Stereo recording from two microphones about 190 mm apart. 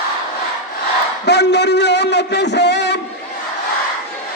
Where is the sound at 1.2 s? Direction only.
60° left (ahead or behind).